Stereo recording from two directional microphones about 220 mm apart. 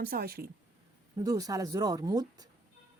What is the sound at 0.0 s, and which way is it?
Speech, 45° right (ahead or behind).